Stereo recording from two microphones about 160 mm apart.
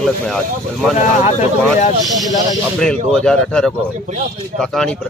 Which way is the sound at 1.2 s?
45° left (ahead or behind).